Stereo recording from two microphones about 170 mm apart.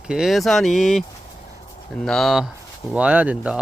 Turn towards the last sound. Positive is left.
turn(degrees=-10)  # may be behind; listen again after turning